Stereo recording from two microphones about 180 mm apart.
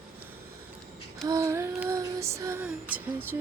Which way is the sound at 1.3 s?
15° right (ahead or behind).